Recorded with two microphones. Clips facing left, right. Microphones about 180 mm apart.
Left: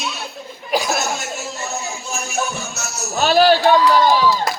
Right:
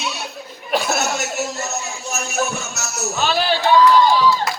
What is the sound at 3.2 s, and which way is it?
Speech, 45° left (ahead or behind).